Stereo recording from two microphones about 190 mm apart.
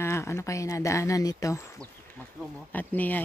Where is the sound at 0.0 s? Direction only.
15° left (ahead or behind).